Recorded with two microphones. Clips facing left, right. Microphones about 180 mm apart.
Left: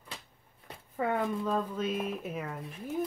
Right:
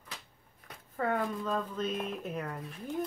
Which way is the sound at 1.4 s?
5° left (ahead or behind).